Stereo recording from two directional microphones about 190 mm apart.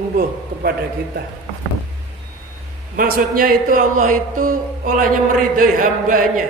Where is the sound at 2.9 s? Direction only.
50° right (ahead or behind).